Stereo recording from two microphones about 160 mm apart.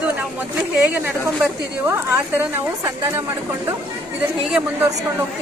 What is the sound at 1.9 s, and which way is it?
A woman's voice, 15° right (ahead or behind).